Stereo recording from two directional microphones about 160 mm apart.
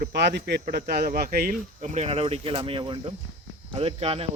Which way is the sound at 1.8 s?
45° right (ahead or behind).